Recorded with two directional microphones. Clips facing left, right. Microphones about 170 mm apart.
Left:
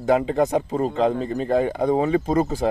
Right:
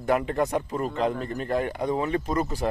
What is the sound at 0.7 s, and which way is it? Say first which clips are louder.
Speech: left 5 dB; 30° left (ahead or behind).